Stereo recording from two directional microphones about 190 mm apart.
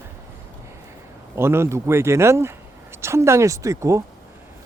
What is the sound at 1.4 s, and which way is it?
Speech, 15° right (ahead or behind).